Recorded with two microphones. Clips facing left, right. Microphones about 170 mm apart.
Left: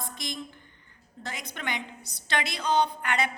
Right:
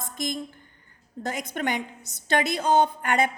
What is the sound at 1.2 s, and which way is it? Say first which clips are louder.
A woman's voice: right 8 dB; 45° right (ahead or behind).